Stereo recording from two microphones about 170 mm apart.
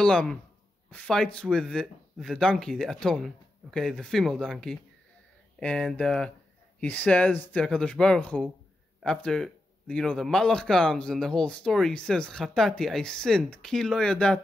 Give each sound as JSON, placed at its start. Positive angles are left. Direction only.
{"t": 0.0, "sound": "a man's voice", "side_deg": 5}